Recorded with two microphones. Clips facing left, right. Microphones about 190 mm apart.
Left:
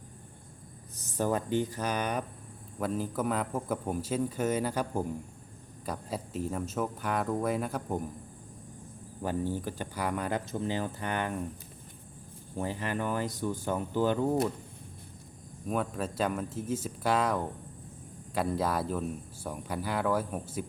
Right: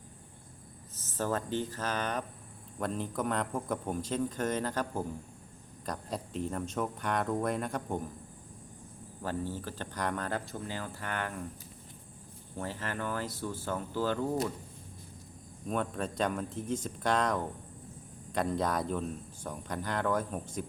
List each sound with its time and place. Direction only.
0.9 s speech: 15° left (ahead or behind)
9.2 s speech: 15° left (ahead or behind)
12.5 s speech: 15° left (ahead or behind)
15.6 s speech: 5° left (ahead or behind)